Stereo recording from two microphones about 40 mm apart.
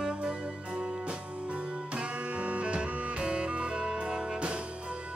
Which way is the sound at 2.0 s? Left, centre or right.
Right.